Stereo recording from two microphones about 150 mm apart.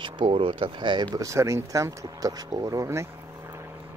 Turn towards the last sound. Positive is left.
turn(degrees=-15)  # may be behind; listen again after turning